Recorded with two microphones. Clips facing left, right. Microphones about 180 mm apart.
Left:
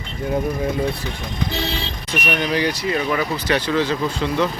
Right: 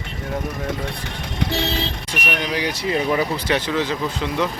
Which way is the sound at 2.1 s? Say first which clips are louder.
Left 4 dB; 10° right (ahead or behind).